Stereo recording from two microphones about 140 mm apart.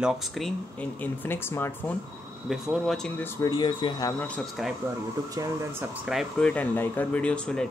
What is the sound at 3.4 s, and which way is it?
Speech, 30° left (ahead or behind).